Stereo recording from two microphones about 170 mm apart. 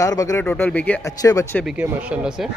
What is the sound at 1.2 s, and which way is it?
Speech, 20° left (ahead or behind).